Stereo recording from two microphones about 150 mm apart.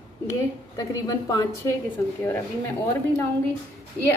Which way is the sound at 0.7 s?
25° left (ahead or behind).